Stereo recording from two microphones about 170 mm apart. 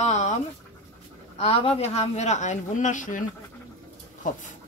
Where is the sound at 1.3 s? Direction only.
35° left (ahead or behind).